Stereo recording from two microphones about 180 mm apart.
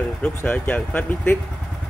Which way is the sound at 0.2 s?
10° left (ahead or behind).